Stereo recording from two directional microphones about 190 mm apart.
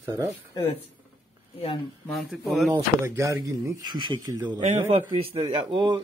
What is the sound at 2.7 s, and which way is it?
Speech, 15° right (ahead or behind).